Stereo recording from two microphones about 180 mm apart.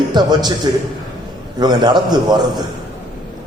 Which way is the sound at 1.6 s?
25° right (ahead or behind).